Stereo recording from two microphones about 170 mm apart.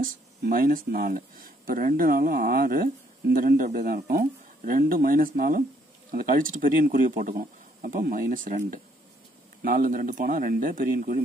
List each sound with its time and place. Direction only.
0.0 s speech: 60° right (ahead or behind)